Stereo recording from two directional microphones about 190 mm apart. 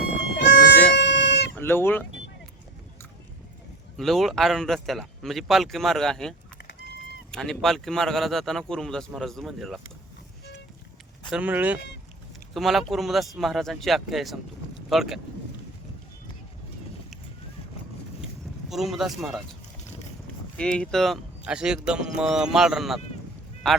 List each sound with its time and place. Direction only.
0.7 s a sound: 65° left (ahead or behind)
1.5 s speech: 10° left (ahead or behind)
3.9 s speech: centre (ahead or behind)
11.3 s speech: 10° right (ahead or behind)
18.7 s speech: centre (ahead or behind)
20.6 s speech: 5° left (ahead or behind)